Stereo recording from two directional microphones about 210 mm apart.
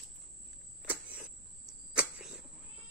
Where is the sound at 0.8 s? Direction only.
10° right (ahead or behind).